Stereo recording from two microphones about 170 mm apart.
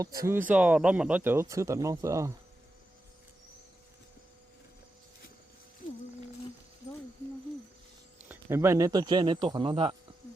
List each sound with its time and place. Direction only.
0.0 s speech: 20° right (ahead or behind)
8.3 s speech: 15° right (ahead or behind); by 9.9 s 30° right (ahead or behind)